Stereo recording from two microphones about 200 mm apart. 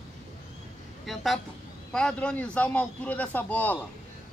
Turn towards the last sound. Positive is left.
turn(degrees=10)  # may be behind; listen again after turning